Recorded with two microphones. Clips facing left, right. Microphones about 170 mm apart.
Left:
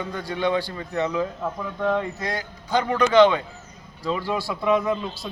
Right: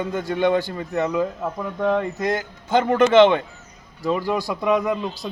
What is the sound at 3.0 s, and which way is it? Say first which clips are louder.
A man's voice: right 2 dB; 25° right (ahead or behind).